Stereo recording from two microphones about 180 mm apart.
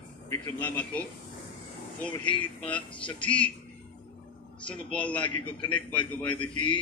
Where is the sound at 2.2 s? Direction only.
5° left (ahead or behind).